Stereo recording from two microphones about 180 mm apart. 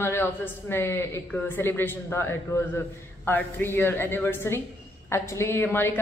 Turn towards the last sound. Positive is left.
turn(degrees=15)  # may be behind; listen again after turning